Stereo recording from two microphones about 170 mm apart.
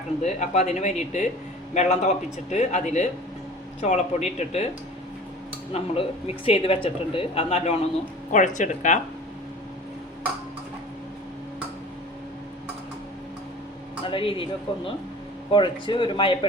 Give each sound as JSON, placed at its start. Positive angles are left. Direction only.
{"t": 0.2, "sound": "a man's voice", "side_deg": 40}
{"t": 5.7, "sound": "speech", "side_deg": 35}
{"t": 8.3, "sound": "a man's voice", "side_deg": 45}
{"t": 14.0, "sound": "speech", "side_deg": 30}
{"t": 15.5, "sound": "speech", "side_deg": 30}